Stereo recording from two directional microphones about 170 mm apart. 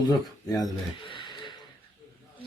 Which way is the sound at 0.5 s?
25° left (ahead or behind).